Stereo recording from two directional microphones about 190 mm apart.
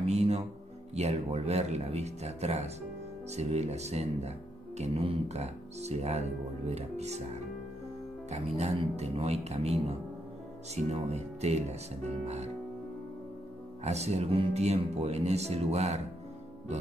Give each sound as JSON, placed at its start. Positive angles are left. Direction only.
{"t": 0.0, "sound": "music", "side_deg": -35}
{"t": 0.9, "sound": "speech", "side_deg": -35}
{"t": 8.3, "sound": "speech", "side_deg": -35}
{"t": 13.8, "sound": "speech", "side_deg": -35}